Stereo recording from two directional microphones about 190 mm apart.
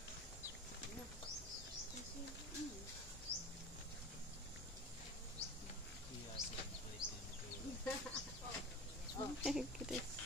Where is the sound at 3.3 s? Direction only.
35° right (ahead or behind).